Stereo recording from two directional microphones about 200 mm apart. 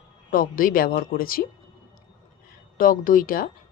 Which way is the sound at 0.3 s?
45° left (ahead or behind).